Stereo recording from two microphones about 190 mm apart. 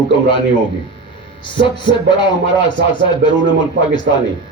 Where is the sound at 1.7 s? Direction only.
25° left (ahead or behind).